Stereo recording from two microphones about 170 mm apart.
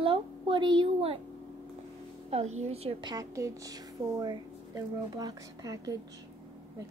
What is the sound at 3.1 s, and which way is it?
A woman's voice, 20° right (ahead or behind).